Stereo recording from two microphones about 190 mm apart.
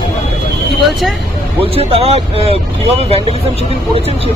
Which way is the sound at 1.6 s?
30° right (ahead or behind).